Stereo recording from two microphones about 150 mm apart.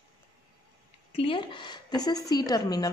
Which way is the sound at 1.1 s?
35° left (ahead or behind).